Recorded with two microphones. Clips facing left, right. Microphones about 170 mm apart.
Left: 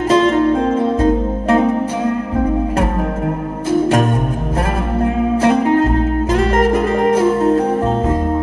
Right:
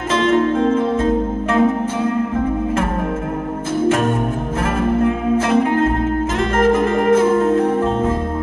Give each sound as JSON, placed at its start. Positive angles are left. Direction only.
{"t": 0.1, "sound": "music", "side_deg": 35}
{"t": 6.3, "sound": "music", "side_deg": 35}